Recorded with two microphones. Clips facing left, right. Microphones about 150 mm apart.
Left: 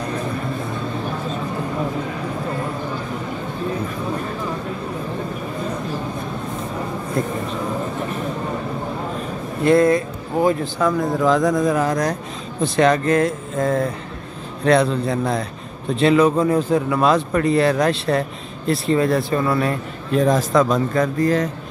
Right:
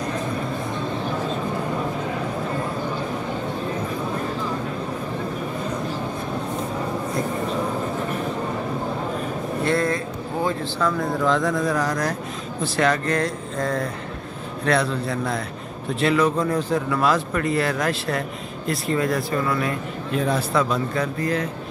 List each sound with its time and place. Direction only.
9.7 s a sound: 20° left (ahead or behind)
10.8 s speech: 20° left (ahead or behind)
20.2 s speech: 40° left (ahead or behind)